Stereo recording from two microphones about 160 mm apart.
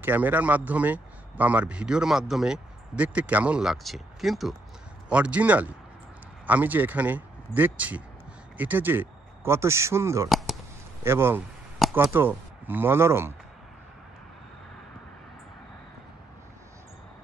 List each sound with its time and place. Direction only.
0.0 s speech: 10° right (ahead or behind)
10.3 s a sound: centre (ahead or behind)
11.1 s speech: 15° right (ahead or behind)